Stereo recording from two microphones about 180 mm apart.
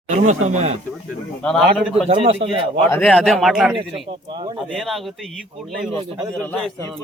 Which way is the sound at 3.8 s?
30° right (ahead or behind).